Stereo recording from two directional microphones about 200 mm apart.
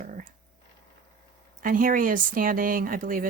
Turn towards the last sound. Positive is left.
turn(degrees=-45)  # may be behind; listen again after turning